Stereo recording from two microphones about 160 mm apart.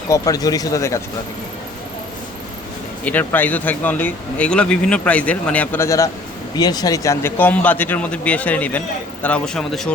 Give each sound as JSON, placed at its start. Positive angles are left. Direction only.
{"t": 0.1, "sound": "speech", "side_deg": 20}
{"t": 3.0, "sound": "a man's voice", "side_deg": 10}